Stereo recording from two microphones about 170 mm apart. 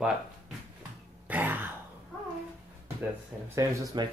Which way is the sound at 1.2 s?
10° right (ahead or behind).